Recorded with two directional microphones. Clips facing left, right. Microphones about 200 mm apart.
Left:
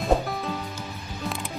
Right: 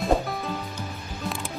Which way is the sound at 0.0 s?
Centre (ahead or behind).